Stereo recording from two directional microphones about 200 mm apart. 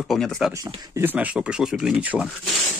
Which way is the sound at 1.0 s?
5° right (ahead or behind).